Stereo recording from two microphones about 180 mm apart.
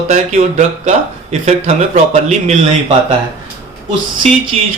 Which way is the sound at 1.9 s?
40° right (ahead or behind).